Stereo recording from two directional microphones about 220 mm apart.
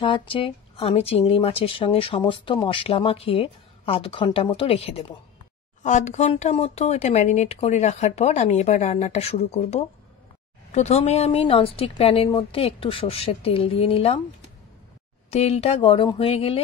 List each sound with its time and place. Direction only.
0.0 s speech: 20° left (ahead or behind)
15.2 s speech: 30° left (ahead or behind)